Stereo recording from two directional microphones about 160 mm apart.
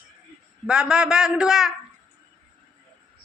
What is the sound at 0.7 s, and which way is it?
A man's voice, 5° right (ahead or behind).